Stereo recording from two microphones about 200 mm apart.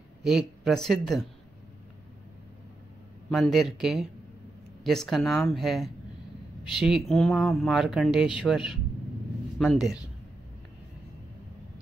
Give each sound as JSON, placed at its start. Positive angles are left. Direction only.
{"t": 0.2, "sound": "speech", "side_deg": 0}
{"t": 3.3, "sound": "speech", "side_deg": 0}